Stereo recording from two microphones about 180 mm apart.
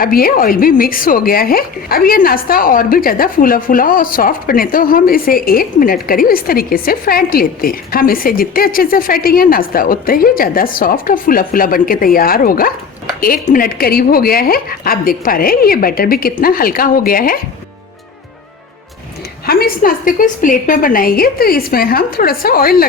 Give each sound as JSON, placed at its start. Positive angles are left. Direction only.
{"t": 0.0, "sound": "a woman's voice", "side_deg": 55}
{"t": 19.5, "sound": "a woman's voice", "side_deg": 55}